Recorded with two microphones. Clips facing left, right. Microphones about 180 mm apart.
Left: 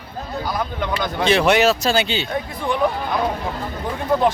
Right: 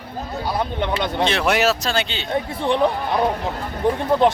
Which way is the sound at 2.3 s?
30° right (ahead or behind).